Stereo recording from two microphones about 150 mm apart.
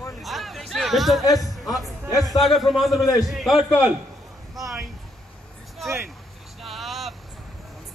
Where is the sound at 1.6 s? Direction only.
Centre (ahead or behind).